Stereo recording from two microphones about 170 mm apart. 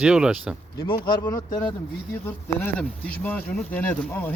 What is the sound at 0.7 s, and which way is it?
Speech, 25° left (ahead or behind).